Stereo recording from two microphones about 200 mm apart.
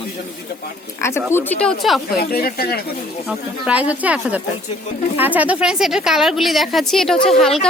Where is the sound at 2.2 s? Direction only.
50° left (ahead or behind).